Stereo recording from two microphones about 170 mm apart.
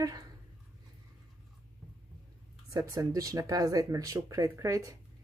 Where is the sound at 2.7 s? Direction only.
20° right (ahead or behind).